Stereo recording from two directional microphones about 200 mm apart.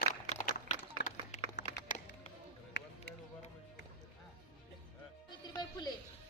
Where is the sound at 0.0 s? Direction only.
40° left (ahead or behind).